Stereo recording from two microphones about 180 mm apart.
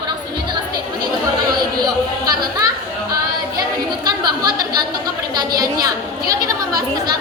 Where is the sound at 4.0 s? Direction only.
25° right (ahead or behind).